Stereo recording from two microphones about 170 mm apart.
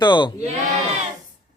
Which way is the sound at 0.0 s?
25° left (ahead or behind).